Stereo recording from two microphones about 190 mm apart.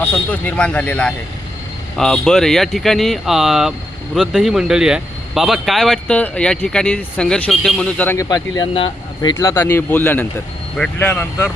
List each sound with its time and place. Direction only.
0.0 s speech: 10° left (ahead or behind)
8.7 s speech: 30° left (ahead or behind)
9.4 s a man's voice: 15° left (ahead or behind)